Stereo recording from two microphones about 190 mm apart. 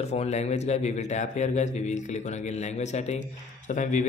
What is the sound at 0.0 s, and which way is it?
A man's voice, 35° left (ahead or behind).